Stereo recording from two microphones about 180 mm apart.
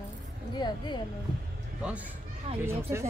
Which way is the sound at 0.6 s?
25° left (ahead or behind).